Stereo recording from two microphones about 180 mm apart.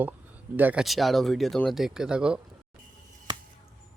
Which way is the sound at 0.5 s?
10° right (ahead or behind).